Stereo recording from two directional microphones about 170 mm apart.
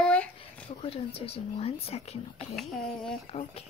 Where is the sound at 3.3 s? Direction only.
35° left (ahead or behind).